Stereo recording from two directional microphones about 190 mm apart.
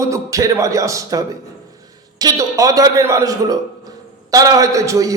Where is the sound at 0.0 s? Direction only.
15° right (ahead or behind).